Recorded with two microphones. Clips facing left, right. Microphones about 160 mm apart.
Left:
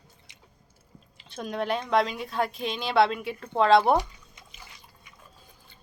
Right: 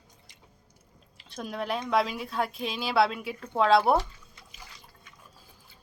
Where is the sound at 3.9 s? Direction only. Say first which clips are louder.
Left 1 dB; 15° left (ahead or behind).